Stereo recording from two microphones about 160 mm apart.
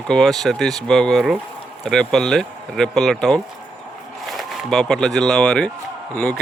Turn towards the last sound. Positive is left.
turn(degrees=10)  # may be behind; listen again after turning